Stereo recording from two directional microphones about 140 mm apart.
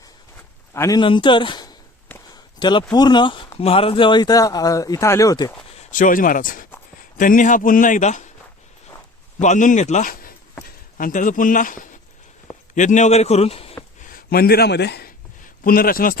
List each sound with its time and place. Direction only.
0.7 s speech: 20° left (ahead or behind)
0.9 s speech: 35° left (ahead or behind)
2.3 s a sound: 30° left (ahead or behind)
2.9 s speech: 30° left (ahead or behind)
5.9 s a man's voice: 70° left (ahead or behind)
9.4 s speech: 60° left (ahead or behind); by 10.3 s 85° left
10.9 s a man's voice: 70° left (ahead or behind); by 13.7 s 45° left (ahead or behind)
14.1 s a sound: 90° left
15.6 s a man's voice: 90° left